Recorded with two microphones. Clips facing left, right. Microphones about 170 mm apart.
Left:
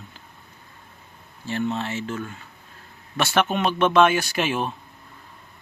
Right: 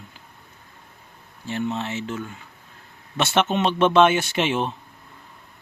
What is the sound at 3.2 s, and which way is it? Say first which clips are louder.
Speech: right 1 dB; 25° right (ahead or behind).